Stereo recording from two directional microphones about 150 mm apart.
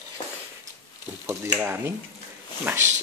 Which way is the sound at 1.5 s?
15° right (ahead or behind).